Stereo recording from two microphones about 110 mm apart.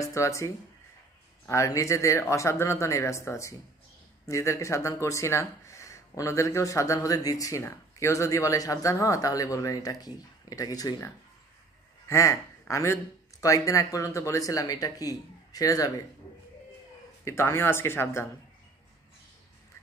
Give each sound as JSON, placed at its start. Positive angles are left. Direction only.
{"t": 0.0, "sound": "speech", "side_deg": 30}
{"t": 1.5, "sound": "speech", "side_deg": 30}
{"t": 12.1, "sound": "speech", "side_deg": 25}
{"t": 17.2, "sound": "speech", "side_deg": 25}